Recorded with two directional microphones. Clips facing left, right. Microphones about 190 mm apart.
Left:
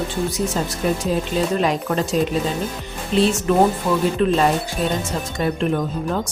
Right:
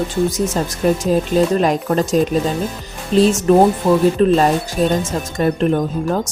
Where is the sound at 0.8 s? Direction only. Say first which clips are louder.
Right 6 dB; 45° right (ahead or behind).